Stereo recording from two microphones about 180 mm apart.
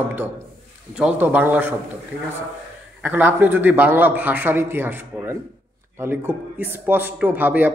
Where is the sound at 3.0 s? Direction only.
10° right (ahead or behind).